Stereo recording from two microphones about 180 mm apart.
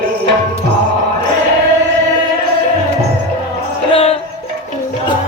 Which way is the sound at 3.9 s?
35° left (ahead or behind).